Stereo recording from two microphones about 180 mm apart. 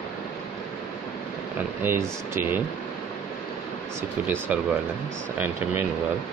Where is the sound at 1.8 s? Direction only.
15° right (ahead or behind).